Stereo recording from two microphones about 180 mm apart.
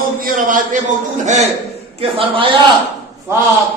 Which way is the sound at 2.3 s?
30° right (ahead or behind).